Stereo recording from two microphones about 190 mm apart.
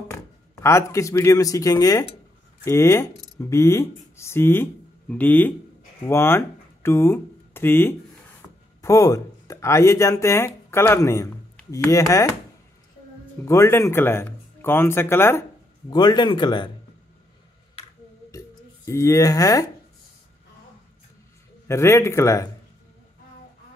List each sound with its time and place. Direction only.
0.6 s speech: 15° left (ahead or behind)
13.5 s speech: 15° left (ahead or behind)
15.9 s speech: 25° left (ahead or behind)
18.9 s speech: 15° left (ahead or behind)
21.6 s speech: 15° left (ahead or behind)